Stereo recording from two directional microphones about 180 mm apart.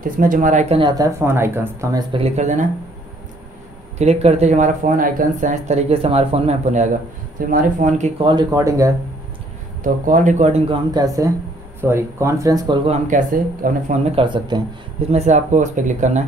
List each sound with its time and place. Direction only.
0.0 s speech: 50° right (ahead or behind)
0.7 s speech: 25° right (ahead or behind)
2.1 s speech: 35° right (ahead or behind)
4.0 s speech: 35° right (ahead or behind)
7.3 s speech: 50° right (ahead or behind)
8.2 s speech: 25° right (ahead or behind)
10.0 s speech: 45° right (ahead or behind)
10.9 s speech: 20° right (ahead or behind); by 13.9 s 50° right (ahead or behind)
14.1 s speech: 25° right (ahead or behind)
15.0 s speech: 40° right (ahead or behind)